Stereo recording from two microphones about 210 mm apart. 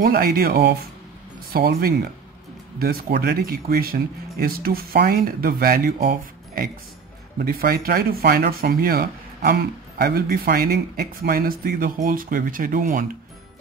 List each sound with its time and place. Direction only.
0.0 s speech: 45° right (ahead or behind)